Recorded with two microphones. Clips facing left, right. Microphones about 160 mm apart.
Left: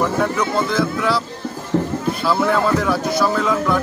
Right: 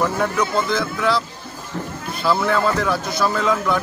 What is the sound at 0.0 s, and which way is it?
Speech, centre (ahead or behind).